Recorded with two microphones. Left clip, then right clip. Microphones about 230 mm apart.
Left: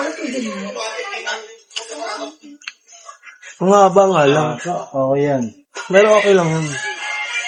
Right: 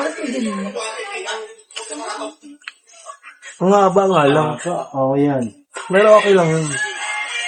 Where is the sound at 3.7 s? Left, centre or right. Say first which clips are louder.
Left 2 dB; centre.